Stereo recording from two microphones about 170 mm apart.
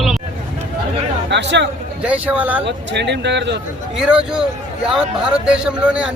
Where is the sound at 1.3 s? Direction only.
90° right.